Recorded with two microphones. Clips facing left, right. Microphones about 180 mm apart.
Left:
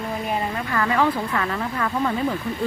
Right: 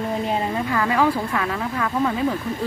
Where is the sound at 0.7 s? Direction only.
10° right (ahead or behind).